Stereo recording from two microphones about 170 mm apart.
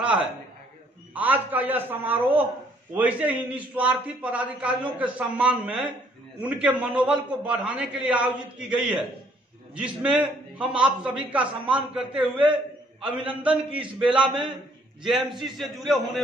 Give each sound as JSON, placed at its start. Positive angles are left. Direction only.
{"t": 0.0, "sound": "a sound", "side_deg": -5}
{"t": 1.1, "sound": "a man's voice", "side_deg": -10}
{"t": 14.2, "sound": "a man's voice", "side_deg": -25}
{"t": 15.4, "sound": "a man's voice", "side_deg": 0}